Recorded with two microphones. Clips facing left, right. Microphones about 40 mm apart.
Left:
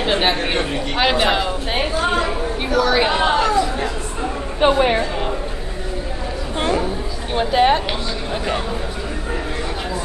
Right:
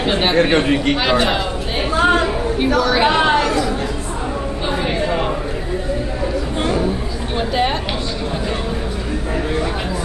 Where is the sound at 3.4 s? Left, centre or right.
Centre.